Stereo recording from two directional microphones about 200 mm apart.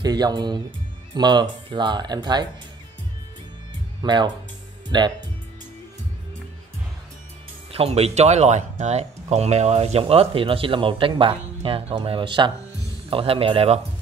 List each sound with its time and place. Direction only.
0.0 s speech: 20° right (ahead or behind)
4.0 s speech: 20° right (ahead or behind)
7.7 s speech: 30° right (ahead or behind)